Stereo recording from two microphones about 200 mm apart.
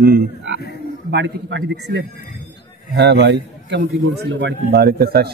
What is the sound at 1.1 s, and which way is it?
A man's voice, 60° right (ahead or behind).